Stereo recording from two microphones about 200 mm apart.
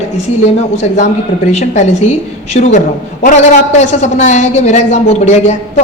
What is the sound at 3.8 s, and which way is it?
A woman's voice, 35° left (ahead or behind).